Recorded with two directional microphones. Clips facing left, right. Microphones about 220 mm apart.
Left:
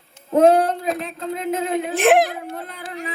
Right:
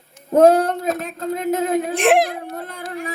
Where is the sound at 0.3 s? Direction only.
40° right (ahead or behind).